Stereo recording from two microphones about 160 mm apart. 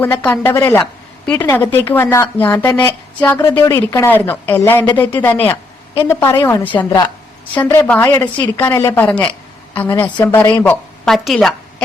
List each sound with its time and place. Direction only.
0.0 s a woman's voice: 10° left (ahead or behind)